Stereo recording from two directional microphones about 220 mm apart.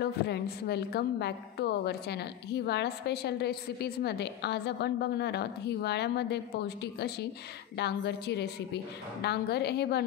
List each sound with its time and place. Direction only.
0.0 s a woman's voice: 50° left (ahead or behind)